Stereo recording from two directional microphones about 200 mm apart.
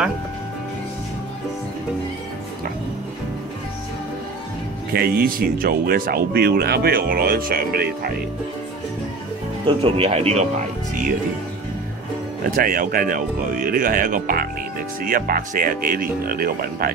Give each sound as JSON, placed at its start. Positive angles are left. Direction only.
{"t": 4.9, "sound": "speech", "side_deg": -45}
{"t": 9.7, "sound": "speech", "side_deg": -30}
{"t": 12.4, "sound": "speech", "side_deg": -45}